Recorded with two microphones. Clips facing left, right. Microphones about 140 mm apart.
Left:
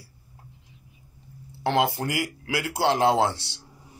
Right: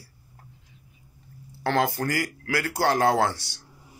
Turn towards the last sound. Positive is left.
turn(degrees=25)  # may be behind; listen again after turning